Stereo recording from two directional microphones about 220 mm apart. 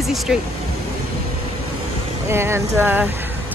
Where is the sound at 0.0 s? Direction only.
Centre (ahead or behind).